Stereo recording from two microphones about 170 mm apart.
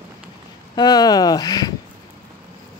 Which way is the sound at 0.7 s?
25° left (ahead or behind).